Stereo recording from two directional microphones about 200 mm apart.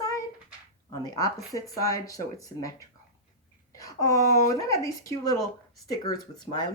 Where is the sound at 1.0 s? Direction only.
15° left (ahead or behind).